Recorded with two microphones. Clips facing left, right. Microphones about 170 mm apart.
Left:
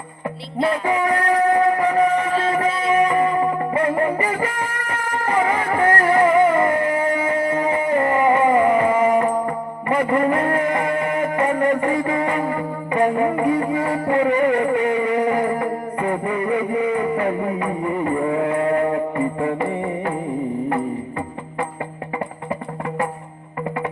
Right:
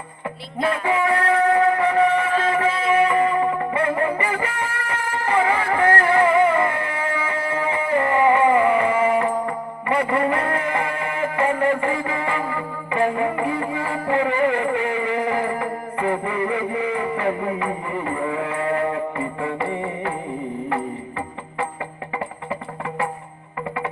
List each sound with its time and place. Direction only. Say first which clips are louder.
0.6 s music: left 1 dB; 35° left (ahead or behind)